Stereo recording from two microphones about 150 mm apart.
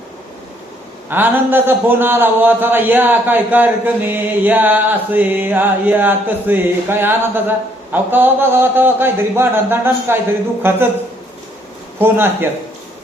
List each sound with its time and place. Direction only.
1.1 s a man's voice: 15° right (ahead or behind)
11.9 s a man's voice: 15° right (ahead or behind)